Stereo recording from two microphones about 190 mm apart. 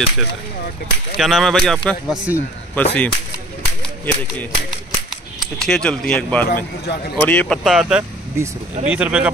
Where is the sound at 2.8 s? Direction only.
10° left (ahead or behind).